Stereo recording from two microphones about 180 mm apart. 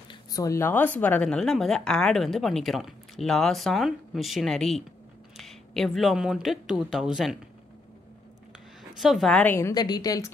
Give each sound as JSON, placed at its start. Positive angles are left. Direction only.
{"t": 0.1, "sound": "speech", "side_deg": 20}
{"t": 8.9, "sound": "a woman's voice", "side_deg": 0}